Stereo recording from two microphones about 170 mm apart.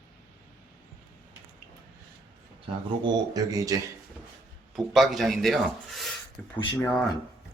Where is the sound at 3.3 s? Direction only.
20° right (ahead or behind).